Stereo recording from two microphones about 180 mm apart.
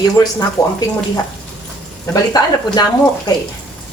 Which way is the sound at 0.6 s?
20° left (ahead or behind).